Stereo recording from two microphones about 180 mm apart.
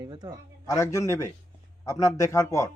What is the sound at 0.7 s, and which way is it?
Speech, 15° left (ahead or behind).